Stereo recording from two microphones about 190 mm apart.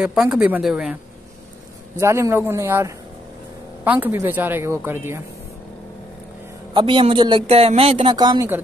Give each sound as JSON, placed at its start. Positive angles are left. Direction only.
{"t": 0.0, "sound": "a woman's voice", "side_deg": -5}
{"t": 2.0, "sound": "a woman's voice", "side_deg": -15}
{"t": 6.7, "sound": "speech", "side_deg": -25}